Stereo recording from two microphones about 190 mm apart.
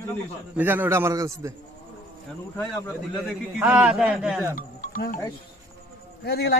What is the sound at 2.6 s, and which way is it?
Speech, 10° left (ahead or behind).